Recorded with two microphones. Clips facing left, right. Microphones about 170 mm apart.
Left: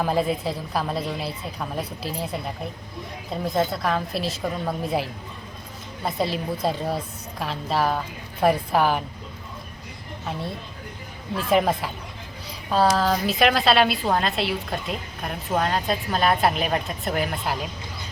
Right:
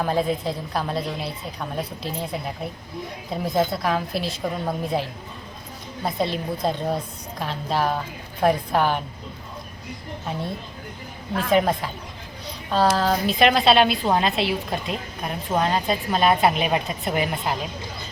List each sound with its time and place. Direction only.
0.0 s a woman's voice: 5° left (ahead or behind)
3.4 s a woman's voice: centre (ahead or behind)
6.1 s a woman's voice: 5° left (ahead or behind)
11.5 s a woman's voice: 5° left (ahead or behind)
13.0 s a woman's voice: centre (ahead or behind)